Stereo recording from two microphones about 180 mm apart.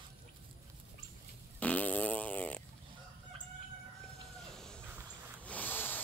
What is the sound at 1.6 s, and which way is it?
Fart, 10° left (ahead or behind).